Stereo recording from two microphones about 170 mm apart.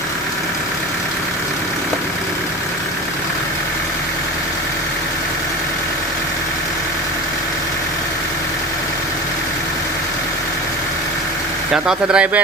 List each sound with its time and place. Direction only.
11.7 s speech: 5° right (ahead or behind)